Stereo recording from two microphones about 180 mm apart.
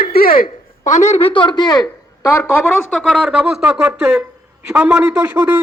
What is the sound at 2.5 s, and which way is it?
A man's voice, 5° left (ahead or behind).